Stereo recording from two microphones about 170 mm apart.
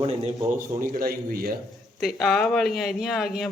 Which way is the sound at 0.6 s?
55° right (ahead or behind).